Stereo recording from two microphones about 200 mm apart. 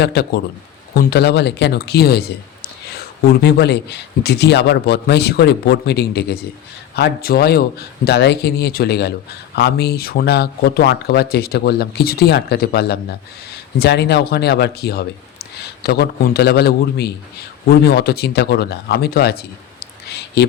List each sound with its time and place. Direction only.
0.0 s a man's voice: 55° left (ahead or behind)
20.1 s clicking: 55° left (ahead or behind)